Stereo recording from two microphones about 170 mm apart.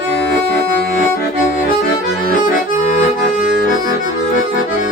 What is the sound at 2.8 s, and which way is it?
Accordion, 50° left (ahead or behind).